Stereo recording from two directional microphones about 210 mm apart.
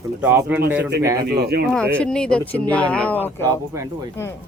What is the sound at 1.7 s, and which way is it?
Speech, 5° left (ahead or behind).